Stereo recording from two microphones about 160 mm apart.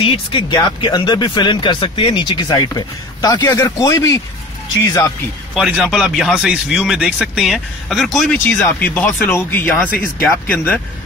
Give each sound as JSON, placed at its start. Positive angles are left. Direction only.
{"t": 0.0, "sound": "speech", "side_deg": 30}
{"t": 5.5, "sound": "speech", "side_deg": -5}